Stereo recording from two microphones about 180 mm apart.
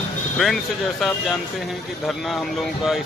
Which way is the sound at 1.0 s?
Centre (ahead or behind).